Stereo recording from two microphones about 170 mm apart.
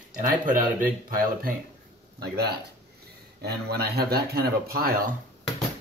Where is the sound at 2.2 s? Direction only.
70° right (ahead or behind).